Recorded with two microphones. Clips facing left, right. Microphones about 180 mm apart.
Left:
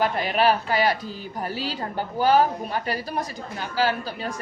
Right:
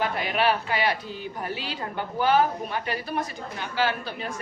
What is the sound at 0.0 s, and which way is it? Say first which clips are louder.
A woman's voice: left 3 dB; 40° left (ahead or behind).